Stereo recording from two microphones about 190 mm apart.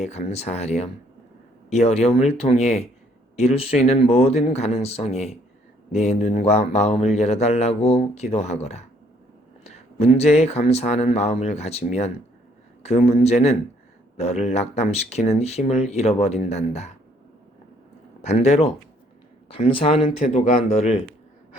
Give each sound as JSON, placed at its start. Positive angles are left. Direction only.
{"t": 0.0, "sound": "a man's voice", "side_deg": 35}
{"t": 18.2, "sound": "a man's voice", "side_deg": 35}